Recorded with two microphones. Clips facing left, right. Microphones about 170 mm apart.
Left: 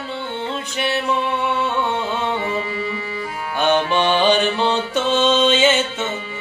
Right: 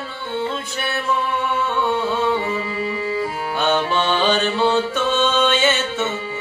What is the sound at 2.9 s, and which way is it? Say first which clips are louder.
Music: right 5 dB; 35° right (ahead or behind).